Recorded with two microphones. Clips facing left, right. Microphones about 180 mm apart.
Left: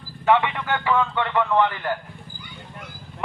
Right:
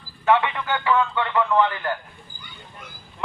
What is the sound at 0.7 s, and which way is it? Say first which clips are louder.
Speech: right 1 dB; 20° left (ahead or behind).